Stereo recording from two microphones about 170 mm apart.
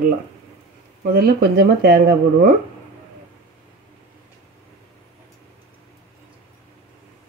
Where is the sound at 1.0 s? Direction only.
65° right (ahead or behind).